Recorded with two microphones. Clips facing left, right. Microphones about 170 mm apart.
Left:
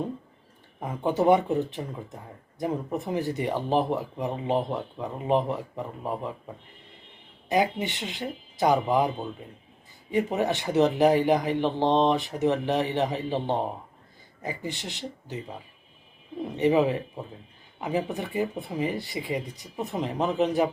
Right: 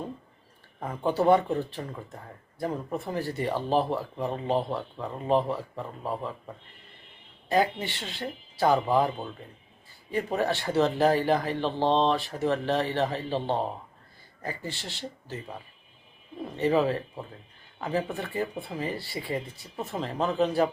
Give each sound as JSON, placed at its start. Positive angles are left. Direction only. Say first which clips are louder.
{"t": 0.8, "sound": "speech", "louder": "left 1 dB", "side_deg": 15}
{"t": 7.5, "sound": "speech", "louder": "left 1 dB", "side_deg": 20}
{"t": 16.4, "sound": "speech", "louder": "left 2 dB", "side_deg": 20}